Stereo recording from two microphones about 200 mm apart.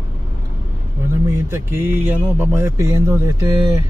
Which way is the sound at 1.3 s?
10° right (ahead or behind).